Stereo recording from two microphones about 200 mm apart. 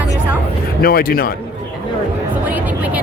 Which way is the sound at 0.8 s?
50° left (ahead or behind).